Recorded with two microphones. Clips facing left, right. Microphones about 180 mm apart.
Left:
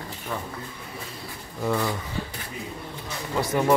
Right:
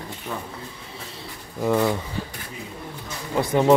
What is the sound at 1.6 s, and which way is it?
Speech, 20° right (ahead or behind).